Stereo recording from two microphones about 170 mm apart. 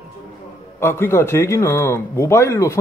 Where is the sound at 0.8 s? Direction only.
15° left (ahead or behind).